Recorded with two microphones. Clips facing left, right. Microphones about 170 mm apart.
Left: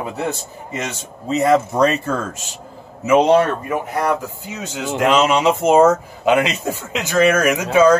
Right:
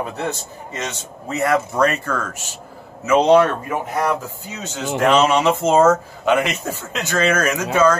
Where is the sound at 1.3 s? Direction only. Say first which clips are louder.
Left 4 dB; 20° left (ahead or behind).